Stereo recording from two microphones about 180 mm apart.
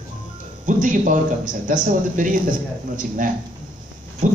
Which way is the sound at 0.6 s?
45° right (ahead or behind).